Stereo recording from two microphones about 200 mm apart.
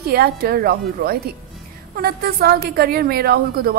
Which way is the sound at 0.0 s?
50° right (ahead or behind).